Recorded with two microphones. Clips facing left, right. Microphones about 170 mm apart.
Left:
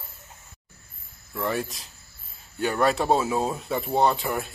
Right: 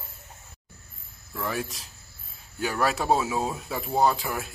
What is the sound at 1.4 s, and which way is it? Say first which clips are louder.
Speech: left 3 dB; centre (ahead or behind).